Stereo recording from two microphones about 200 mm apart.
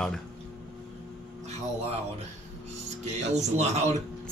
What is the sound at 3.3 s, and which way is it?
Speech, 35° right (ahead or behind).